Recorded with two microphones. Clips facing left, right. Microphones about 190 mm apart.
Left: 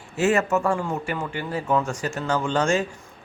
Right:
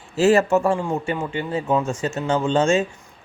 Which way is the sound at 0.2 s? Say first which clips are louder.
Right 5 dB; 30° right (ahead or behind).